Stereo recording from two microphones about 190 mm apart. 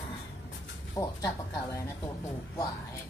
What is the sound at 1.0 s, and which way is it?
Speech, 15° left (ahead or behind).